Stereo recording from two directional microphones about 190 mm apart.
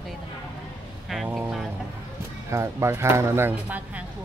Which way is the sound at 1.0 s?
Centre (ahead or behind).